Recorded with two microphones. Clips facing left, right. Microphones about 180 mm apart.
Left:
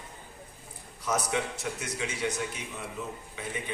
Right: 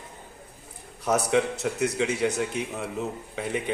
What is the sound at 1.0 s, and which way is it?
A man's voice, 65° right (ahead or behind).